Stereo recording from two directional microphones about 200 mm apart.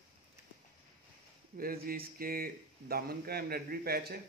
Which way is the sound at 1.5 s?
45° right (ahead or behind).